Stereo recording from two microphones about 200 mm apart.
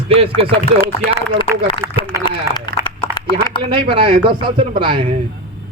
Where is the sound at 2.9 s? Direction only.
25° left (ahead or behind).